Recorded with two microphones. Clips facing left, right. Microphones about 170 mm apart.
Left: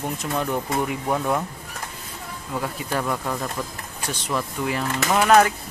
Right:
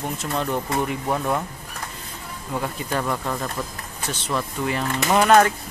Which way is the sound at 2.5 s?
Centre (ahead or behind).